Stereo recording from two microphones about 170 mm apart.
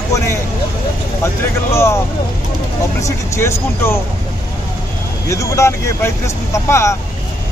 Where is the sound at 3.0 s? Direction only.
15° left (ahead or behind).